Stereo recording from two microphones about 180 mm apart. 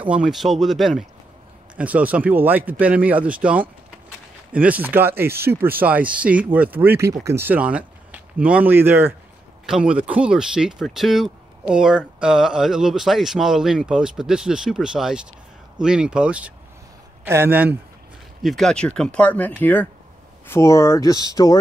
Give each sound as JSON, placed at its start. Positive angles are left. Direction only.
{"t": 0.1, "sound": "speech", "side_deg": 0}
{"t": 18.4, "sound": "speech", "side_deg": 0}